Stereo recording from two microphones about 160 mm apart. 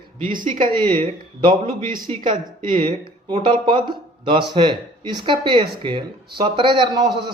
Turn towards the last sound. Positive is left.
turn(degrees=-25)  # may be behind; listen again after turning